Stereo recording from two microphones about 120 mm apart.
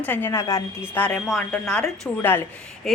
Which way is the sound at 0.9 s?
10° left (ahead or behind).